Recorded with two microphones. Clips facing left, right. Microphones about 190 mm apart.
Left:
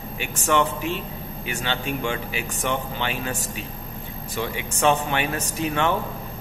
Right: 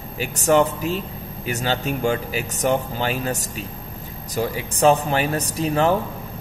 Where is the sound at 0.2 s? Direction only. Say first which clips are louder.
Right 5 dB; 40° right (ahead or behind).